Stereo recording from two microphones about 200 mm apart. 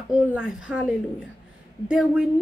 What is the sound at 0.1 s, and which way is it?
A woman's voice, 5° right (ahead or behind).